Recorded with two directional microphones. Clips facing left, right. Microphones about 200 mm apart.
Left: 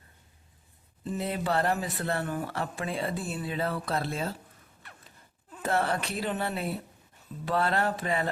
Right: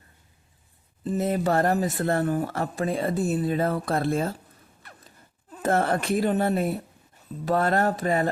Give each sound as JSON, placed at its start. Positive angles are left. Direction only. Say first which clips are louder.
{"t": 1.0, "sound": "speech", "louder": "right 6 dB", "side_deg": -40}
{"t": 4.8, "sound": "zipper", "louder": "right 2 dB", "side_deg": -40}
{"t": 7.4, "sound": "speech", "louder": "right 5 dB", "side_deg": -45}